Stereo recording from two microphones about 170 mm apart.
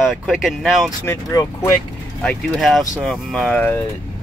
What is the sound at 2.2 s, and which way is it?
Speech, centre (ahead or behind).